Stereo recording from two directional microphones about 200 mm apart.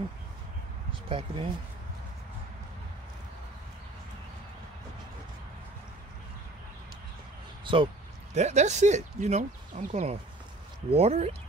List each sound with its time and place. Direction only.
1.0 s speech: 25° right (ahead or behind)
7.6 s speech: 25° right (ahead or behind)
8.4 s speech: 35° right (ahead or behind)